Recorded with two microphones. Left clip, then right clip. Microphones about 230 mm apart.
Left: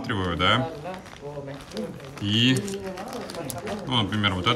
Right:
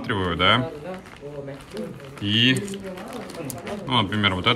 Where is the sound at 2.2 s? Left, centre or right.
Centre.